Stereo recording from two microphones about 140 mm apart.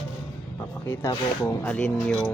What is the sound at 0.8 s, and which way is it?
Speech, 15° left (ahead or behind).